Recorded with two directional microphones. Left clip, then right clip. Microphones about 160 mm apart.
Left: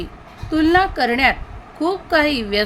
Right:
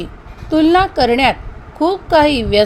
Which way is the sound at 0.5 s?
20° right (ahead or behind).